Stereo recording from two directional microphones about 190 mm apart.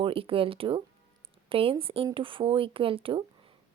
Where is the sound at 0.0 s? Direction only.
30° right (ahead or behind).